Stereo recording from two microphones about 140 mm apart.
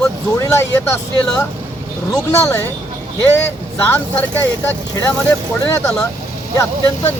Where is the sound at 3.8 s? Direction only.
15° left (ahead or behind).